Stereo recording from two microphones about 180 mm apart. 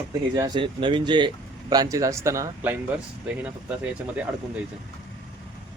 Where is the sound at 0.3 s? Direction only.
20° right (ahead or behind).